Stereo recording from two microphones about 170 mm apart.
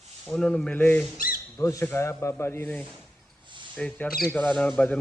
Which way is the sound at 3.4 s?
30° right (ahead or behind).